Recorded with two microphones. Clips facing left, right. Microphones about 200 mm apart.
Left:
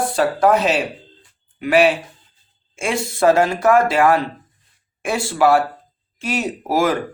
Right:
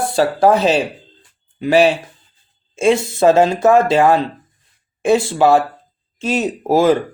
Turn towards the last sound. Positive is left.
turn(degrees=-25)  # may be behind; listen again after turning